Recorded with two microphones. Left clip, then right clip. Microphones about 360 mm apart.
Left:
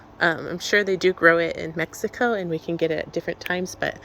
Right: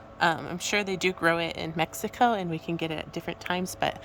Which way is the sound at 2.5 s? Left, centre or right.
Right.